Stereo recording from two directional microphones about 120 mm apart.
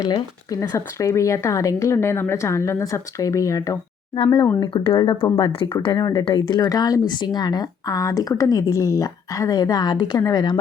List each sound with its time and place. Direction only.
0.0 s speech: 35° left (ahead or behind)
4.6 s speech: 45° left (ahead or behind)
5.8 s speech: 35° left (ahead or behind)